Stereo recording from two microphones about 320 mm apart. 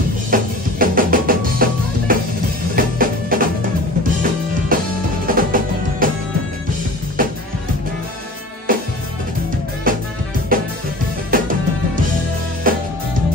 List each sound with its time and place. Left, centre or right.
0.3 s music: right
4.7 s music: right
7.2 s music: right
8.7 s music: right
9.9 s music: right
12.7 s music: right